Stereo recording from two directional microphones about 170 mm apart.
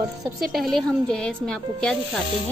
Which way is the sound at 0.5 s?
5° left (ahead or behind).